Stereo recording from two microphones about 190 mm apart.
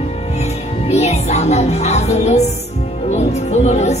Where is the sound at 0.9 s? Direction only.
35° left (ahead or behind).